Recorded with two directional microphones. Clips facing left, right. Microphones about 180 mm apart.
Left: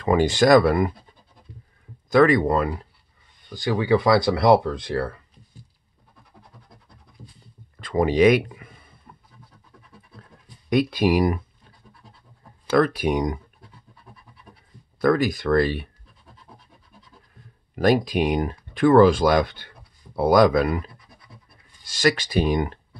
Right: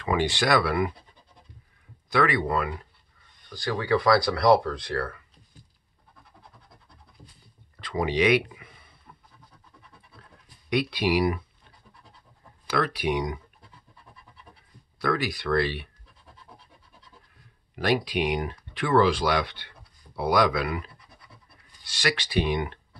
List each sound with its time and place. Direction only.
0.0 s speech: 40° left (ahead or behind)
2.0 s speech: 45° left (ahead or behind)
3.4 s speech: 20° left (ahead or behind)
7.8 s speech: 45° left (ahead or behind)
10.7 s speech: 45° left (ahead or behind)
12.7 s speech: 45° left (ahead or behind)
15.0 s speech: 45° left (ahead or behind)
17.7 s speech: 45° left (ahead or behind)
21.8 s speech: 45° left (ahead or behind)